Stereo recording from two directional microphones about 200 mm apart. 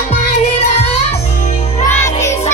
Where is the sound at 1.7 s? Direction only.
35° left (ahead or behind).